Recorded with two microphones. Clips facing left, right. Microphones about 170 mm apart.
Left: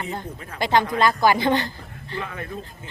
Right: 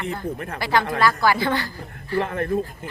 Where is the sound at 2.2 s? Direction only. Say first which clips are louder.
Right 9 dB; 55° right (ahead or behind).